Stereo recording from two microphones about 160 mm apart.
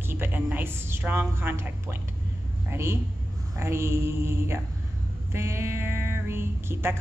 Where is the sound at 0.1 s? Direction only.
10° right (ahead or behind).